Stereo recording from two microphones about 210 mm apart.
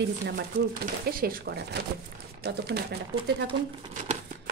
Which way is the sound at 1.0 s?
45° right (ahead or behind).